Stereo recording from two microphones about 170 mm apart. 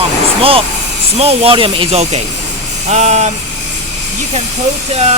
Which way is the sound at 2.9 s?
40° right (ahead or behind).